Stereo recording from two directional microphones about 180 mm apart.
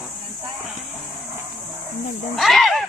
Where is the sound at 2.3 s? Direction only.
Centre (ahead or behind).